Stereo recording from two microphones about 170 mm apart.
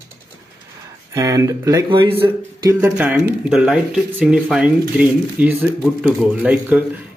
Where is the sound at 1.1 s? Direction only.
20° right (ahead or behind).